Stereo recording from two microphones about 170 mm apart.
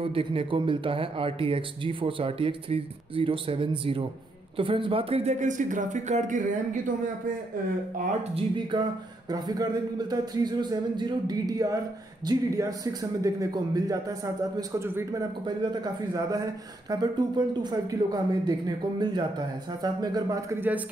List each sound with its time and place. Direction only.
0.0 s a man's voice: 35° right (ahead or behind); by 6.8 s 50° right (ahead or behind)
8.4 s speech: 30° right (ahead or behind)